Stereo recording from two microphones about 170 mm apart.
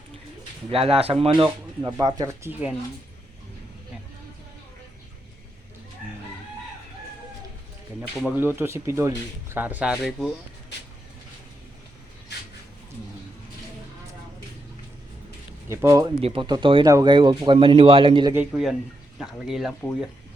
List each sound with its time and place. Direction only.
0.7 s speech: 35° right (ahead or behind); by 2.7 s 10° right (ahead or behind)
8.4 s speech: 15° right (ahead or behind)
15.7 s speech: 15° right (ahead or behind)
16.2 s a man's voice: 30° right (ahead or behind)
18.3 s speech: centre (ahead or behind)